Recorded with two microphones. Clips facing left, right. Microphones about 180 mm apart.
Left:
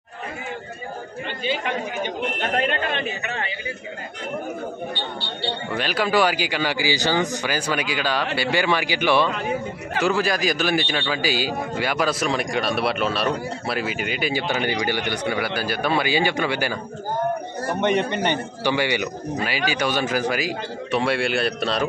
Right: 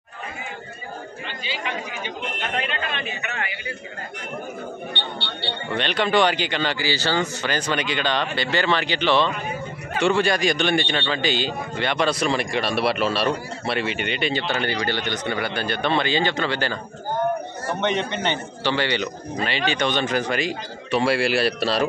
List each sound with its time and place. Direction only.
1.4 s chatter: 50° left (ahead or behind)
3.3 s a man's voice: 30° left (ahead or behind)
5.8 s a man's voice: 5° left (ahead or behind)
18.1 s a man's voice: 50° left (ahead or behind)
18.6 s a man's voice: 10° left (ahead or behind)